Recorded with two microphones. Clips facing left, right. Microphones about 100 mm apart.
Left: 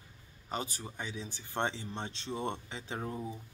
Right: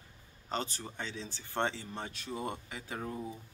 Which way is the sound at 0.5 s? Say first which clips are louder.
Right 1 dB; 10° left (ahead or behind).